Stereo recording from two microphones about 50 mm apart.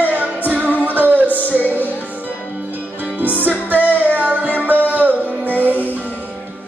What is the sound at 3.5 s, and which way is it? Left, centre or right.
Music, right.